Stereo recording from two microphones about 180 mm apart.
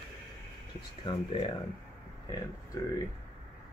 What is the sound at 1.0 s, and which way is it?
Speech, 25° left (ahead or behind).